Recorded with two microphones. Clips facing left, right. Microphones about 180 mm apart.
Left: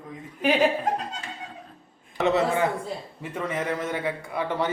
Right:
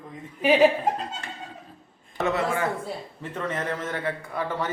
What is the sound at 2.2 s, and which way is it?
A man's voice, 20° left (ahead or behind).